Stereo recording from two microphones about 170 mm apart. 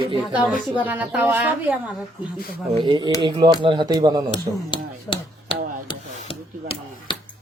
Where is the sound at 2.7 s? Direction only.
25° right (ahead or behind).